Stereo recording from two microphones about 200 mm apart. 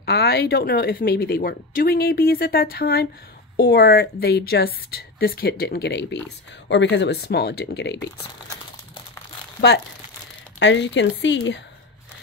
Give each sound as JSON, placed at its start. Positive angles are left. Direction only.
{"t": 0.0, "sound": "a woman's voice", "side_deg": 50}
{"t": 10.6, "sound": "speech", "side_deg": 60}